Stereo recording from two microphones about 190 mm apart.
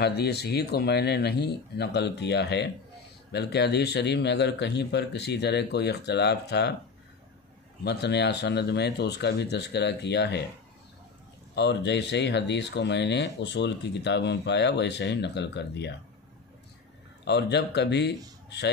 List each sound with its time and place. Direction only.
0.0 s speech: 60° left (ahead or behind)
7.8 s speech: 60° left (ahead or behind)
11.5 s speech: 65° left (ahead or behind)
17.2 s speech: 60° left (ahead or behind)